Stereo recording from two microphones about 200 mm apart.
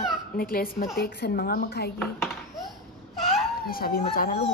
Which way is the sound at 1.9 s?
Centre (ahead or behind).